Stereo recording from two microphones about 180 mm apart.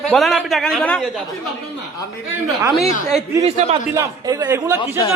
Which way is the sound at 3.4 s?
35° right (ahead or behind).